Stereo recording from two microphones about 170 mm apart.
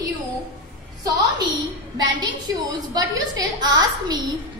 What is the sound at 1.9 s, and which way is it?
A woman's voice, 25° right (ahead or behind).